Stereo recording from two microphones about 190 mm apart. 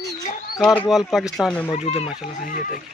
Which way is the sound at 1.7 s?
30° left (ahead or behind).